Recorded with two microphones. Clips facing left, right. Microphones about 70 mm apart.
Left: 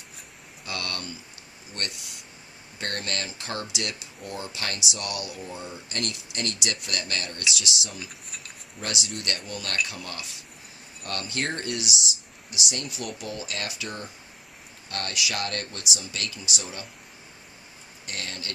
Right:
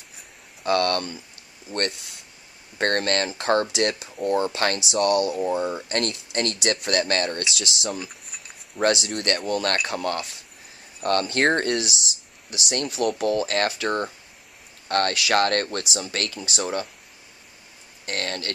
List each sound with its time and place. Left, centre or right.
0.7 s speech: right
1.7 s speech: centre
2.8 s speech: right
18.0 s speech: right